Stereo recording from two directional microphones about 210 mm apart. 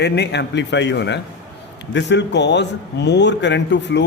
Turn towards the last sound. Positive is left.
turn(degrees=55)  # may be behind; listen again after turning